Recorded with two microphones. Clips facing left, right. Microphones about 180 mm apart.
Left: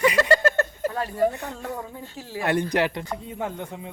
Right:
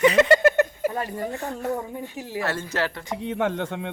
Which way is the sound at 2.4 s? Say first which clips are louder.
Left 5 dB; 15° left (ahead or behind).